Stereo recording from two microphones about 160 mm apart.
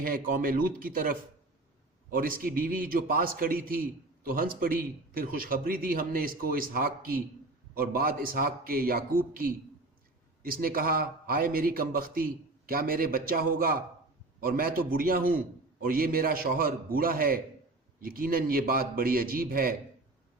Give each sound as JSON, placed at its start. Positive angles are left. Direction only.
{"t": 0.3, "sound": "a man's voice", "side_deg": -60}
{"t": 2.1, "sound": "a man's voice", "side_deg": -60}